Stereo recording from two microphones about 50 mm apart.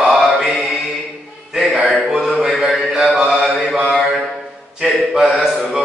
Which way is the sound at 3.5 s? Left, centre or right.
Centre.